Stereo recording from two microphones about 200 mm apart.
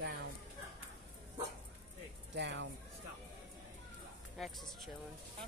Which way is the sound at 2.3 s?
60° right (ahead or behind).